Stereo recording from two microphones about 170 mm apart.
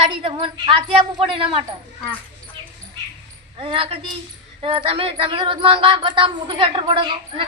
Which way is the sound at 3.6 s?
30° right (ahead or behind).